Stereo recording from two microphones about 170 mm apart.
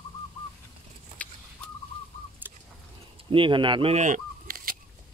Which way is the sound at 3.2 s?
30° right (ahead or behind).